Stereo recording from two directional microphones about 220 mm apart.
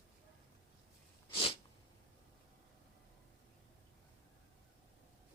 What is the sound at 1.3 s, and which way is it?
Sneeze, 25° left (ahead or behind).